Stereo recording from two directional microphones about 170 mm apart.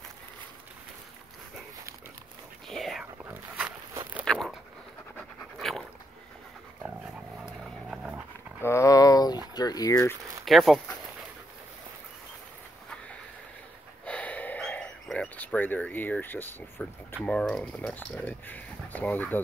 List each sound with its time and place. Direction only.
2.7 s whispering: centre (ahead or behind)
3.3 s dog: 10° right (ahead or behind)
4.2 s zipper: centre (ahead or behind)
5.1 s pant: centre (ahead or behind)
7.4 s vehicle: 5° right (ahead or behind)
8.5 s a sound: 15° left (ahead or behind)
9.6 s speech: 20° left (ahead or behind)
10.4 s speech: centre (ahead or behind)
14.0 s gasp: 10° left (ahead or behind)
17.2 s speech: 5° left (ahead or behind)